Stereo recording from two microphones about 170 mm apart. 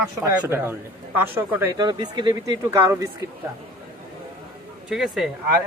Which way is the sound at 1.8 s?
25° right (ahead or behind).